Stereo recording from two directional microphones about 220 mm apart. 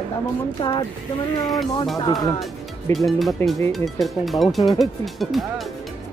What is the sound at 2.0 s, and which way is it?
Speech, 20° left (ahead or behind).